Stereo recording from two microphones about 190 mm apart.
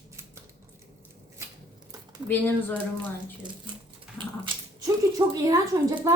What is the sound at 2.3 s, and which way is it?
Speech, 10° left (ahead or behind).